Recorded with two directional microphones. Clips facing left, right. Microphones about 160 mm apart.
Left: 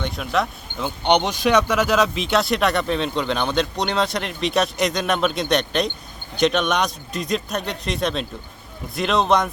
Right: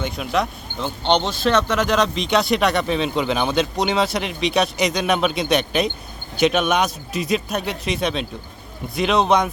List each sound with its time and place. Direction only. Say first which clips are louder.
0.0 s speech: right 1 dB; centre (ahead or behind)
1.0 s speech: left 1 dB; 15° left (ahead or behind); by 9.5 s centre (ahead or behind)